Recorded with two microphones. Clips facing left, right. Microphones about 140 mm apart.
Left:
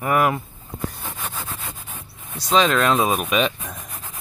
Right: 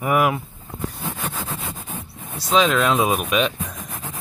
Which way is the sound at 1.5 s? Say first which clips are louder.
Right 4 dB; 40° right (ahead or behind).